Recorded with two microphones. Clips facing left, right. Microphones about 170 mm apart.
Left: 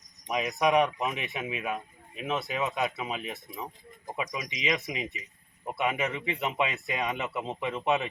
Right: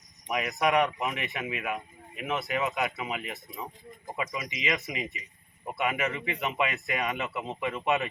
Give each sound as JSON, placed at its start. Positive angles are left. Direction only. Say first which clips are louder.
{"t": 0.3, "sound": "speech", "louder": "left 1 dB", "side_deg": 20}